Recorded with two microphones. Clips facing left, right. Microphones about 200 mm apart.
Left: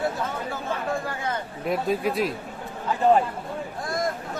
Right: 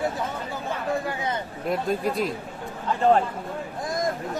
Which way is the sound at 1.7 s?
Centre (ahead or behind).